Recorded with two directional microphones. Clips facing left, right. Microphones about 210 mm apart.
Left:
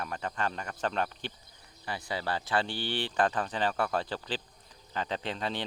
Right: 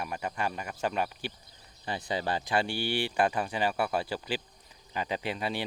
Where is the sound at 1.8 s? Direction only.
20° right (ahead or behind).